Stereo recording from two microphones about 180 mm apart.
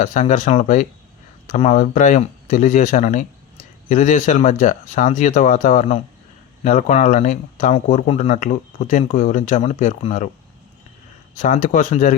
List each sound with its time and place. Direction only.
0.0 s speech: 45° left (ahead or behind)
11.3 s speech: 45° left (ahead or behind)